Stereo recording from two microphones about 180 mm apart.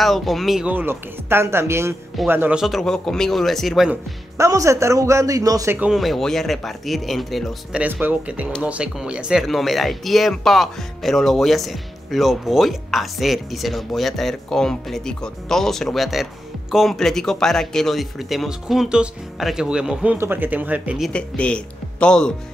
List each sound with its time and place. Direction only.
0.0 s speech: centre (ahead or behind)
4.4 s speech: 15° right (ahead or behind)
5.8 s speech: centre (ahead or behind)
21.1 s speech: 5° left (ahead or behind)